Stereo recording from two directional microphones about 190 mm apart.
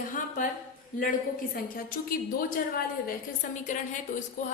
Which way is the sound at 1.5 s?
50° left (ahead or behind).